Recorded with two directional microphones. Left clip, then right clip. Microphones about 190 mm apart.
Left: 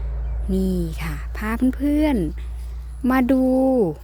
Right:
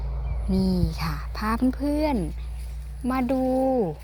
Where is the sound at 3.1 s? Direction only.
60° left (ahead or behind).